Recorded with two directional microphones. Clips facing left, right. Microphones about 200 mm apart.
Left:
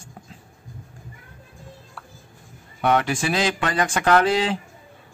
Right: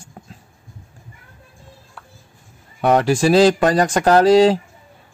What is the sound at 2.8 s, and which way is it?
Speech, 35° right (ahead or behind).